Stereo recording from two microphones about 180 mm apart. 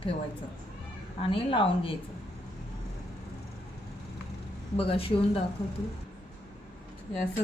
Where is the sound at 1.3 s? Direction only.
30° left (ahead or behind).